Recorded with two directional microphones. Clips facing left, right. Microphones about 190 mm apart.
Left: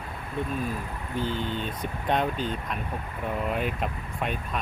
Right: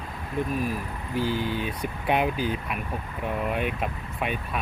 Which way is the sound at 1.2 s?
25° left (ahead or behind).